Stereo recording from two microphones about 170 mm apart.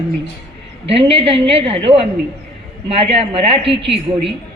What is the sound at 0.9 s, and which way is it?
A woman's voice, 35° right (ahead or behind).